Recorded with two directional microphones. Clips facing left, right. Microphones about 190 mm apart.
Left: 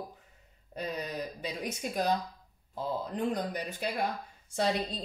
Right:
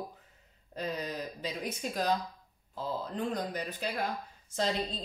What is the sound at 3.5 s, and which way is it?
Speech, 15° left (ahead or behind).